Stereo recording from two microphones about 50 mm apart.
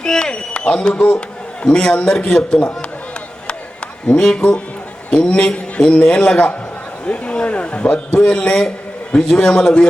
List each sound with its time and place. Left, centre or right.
0.0 s a sound: centre
1.6 s a man's voice: centre
4.0 s a man's voice: centre